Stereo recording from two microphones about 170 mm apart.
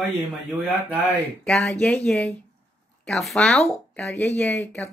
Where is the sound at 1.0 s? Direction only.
5° left (ahead or behind).